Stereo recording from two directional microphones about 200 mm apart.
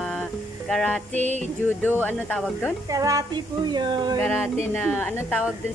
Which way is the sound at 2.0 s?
10° left (ahead or behind).